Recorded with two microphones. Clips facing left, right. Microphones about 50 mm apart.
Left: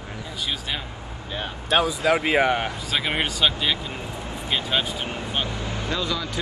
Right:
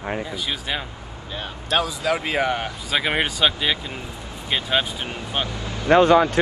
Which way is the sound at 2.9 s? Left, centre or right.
Centre.